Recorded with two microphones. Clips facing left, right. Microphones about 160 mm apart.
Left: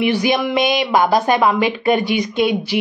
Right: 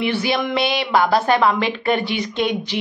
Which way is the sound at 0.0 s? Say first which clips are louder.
Left 4 dB; 15° left (ahead or behind).